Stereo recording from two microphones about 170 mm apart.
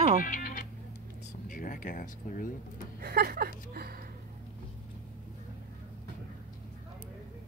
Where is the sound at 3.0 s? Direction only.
65° right (ahead or behind).